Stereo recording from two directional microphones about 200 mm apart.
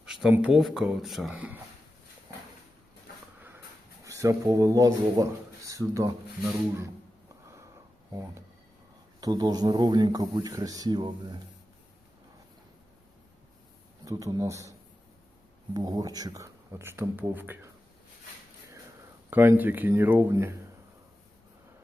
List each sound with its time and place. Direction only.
0.0 s speech: 5° right (ahead or behind)
2.3 s horse: 15° right (ahead or behind)
4.0 s speech: 15° right (ahead or behind)
7.4 s sniff: 15° right (ahead or behind)
9.2 s speech: 20° right (ahead or behind)
14.0 s speech: 15° right (ahead or behind)
19.3 s speech: 10° right (ahead or behind)